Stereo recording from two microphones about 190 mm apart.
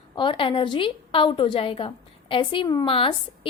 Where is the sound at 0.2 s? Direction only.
25° left (ahead or behind).